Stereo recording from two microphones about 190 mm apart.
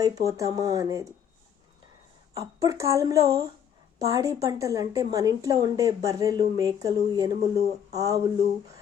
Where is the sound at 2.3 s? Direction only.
15° right (ahead or behind).